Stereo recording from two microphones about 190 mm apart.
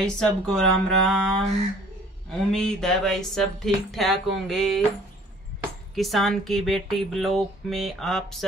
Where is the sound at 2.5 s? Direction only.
5° left (ahead or behind).